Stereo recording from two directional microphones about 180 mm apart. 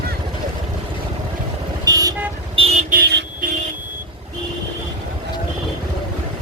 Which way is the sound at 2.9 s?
70° right (ahead or behind).